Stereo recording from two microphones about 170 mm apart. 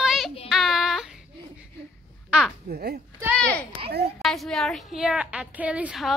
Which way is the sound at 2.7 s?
75° right (ahead or behind).